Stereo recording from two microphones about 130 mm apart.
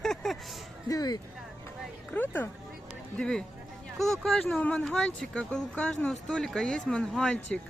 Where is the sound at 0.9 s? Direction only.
30° left (ahead or behind).